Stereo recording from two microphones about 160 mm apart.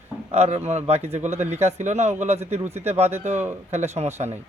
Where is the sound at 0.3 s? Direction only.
40° right (ahead or behind).